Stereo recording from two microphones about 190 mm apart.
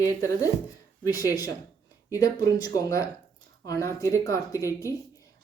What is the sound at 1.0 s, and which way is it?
Speech, 20° left (ahead or behind).